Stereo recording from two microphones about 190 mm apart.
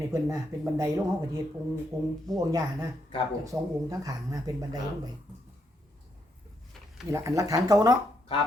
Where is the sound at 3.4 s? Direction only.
15° right (ahead or behind).